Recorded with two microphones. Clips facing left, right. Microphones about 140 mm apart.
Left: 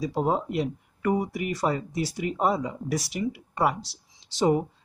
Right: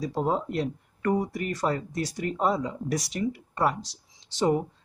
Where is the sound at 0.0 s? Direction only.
10° left (ahead or behind).